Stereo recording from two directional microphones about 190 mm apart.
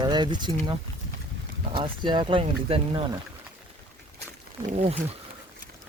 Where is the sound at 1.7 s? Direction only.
25° right (ahead or behind).